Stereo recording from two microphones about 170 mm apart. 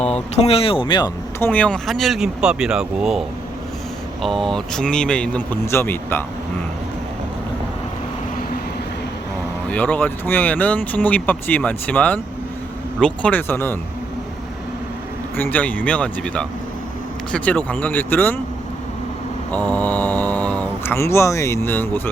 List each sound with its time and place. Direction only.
0.0 s speech: 40° left (ahead or behind)
1.4 s speech: 10° left (ahead or behind)
9.6 s speech: 10° left (ahead or behind)
15.4 s speech: 10° left (ahead or behind)
19.7 s speech: 10° left (ahead or behind)